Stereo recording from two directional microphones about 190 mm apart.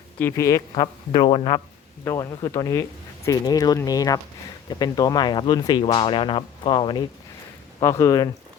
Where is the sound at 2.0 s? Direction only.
15° left (ahead or behind).